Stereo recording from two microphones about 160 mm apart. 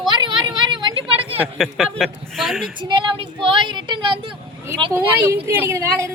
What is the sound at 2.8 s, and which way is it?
A woman's voice, 30° right (ahead or behind).